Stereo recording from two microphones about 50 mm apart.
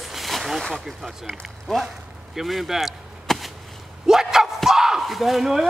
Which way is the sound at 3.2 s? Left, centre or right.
Centre.